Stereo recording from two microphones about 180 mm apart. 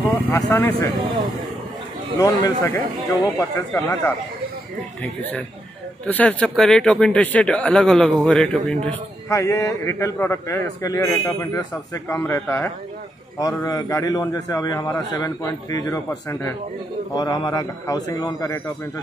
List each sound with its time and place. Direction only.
0.3 s a man's voice: 10° left (ahead or behind)
2.1 s a man's voice: 15° left (ahead or behind)
6.0 s speech: 10° left (ahead or behind)
8.8 s a man's voice: 15° left (ahead or behind)